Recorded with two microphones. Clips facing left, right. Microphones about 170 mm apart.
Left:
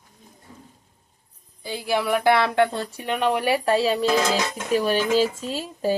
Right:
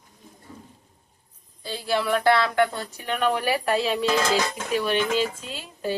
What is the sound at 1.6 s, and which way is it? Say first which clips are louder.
Speech: left 1 dB; 15° left (ahead or behind).